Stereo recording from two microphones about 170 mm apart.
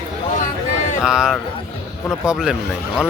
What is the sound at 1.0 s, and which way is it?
Speech, 5° right (ahead or behind).